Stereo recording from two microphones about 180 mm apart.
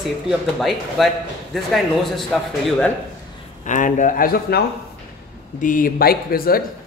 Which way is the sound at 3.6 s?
45° left (ahead or behind).